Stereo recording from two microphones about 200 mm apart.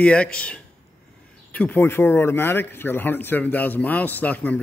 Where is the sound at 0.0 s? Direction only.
5° left (ahead or behind).